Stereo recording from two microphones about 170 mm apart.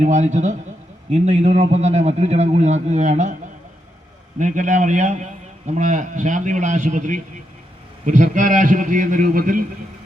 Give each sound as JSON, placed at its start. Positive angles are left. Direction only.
{"t": 0.0, "sound": "a man's voice", "side_deg": -45}
{"t": 4.4, "sound": "a man's voice", "side_deg": -45}